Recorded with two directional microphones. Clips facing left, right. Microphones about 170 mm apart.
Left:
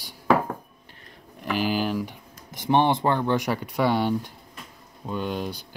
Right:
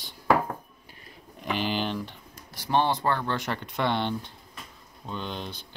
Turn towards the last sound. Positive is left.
turn(degrees=10)  # may be behind; listen again after turning